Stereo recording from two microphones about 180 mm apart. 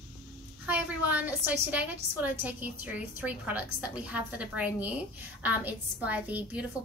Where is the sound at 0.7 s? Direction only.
10° right (ahead or behind).